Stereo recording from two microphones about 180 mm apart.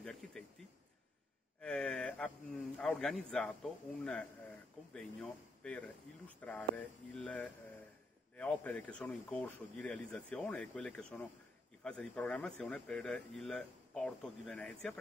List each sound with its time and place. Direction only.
0.0 s speech: 5° left (ahead or behind)
1.6 s a man's voice: 5° left (ahead or behind)